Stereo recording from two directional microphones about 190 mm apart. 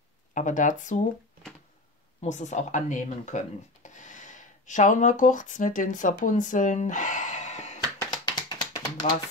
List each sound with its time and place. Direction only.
0.3 s speech: 40° left (ahead or behind)
2.2 s speech: 40° left (ahead or behind)
8.1 s tap: 20° left (ahead or behind)